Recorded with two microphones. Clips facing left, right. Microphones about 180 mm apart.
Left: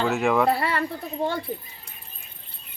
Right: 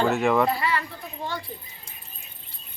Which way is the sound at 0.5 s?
60° left (ahead or behind).